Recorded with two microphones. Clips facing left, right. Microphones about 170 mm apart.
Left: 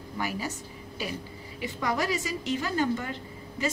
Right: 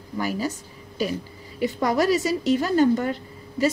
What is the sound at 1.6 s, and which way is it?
A woman's voice, 35° right (ahead or behind).